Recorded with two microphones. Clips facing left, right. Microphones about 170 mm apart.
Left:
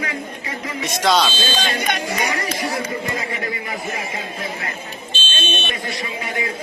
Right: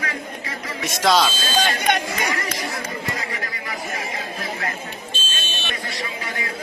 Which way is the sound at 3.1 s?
25° left (ahead or behind).